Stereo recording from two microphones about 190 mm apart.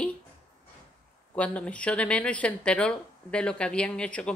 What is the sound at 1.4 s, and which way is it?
Speech, 5° left (ahead or behind).